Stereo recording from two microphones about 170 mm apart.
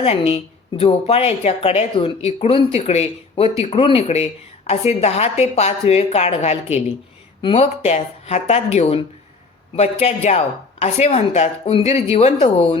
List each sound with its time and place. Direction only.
0.0 s a woman's voice: 35° left (ahead or behind)